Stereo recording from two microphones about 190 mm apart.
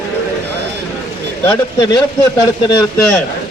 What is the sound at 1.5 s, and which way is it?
A man's voice, 20° left (ahead or behind).